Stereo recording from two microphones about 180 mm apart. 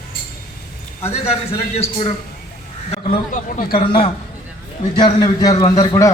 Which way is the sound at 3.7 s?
30° left (ahead or behind).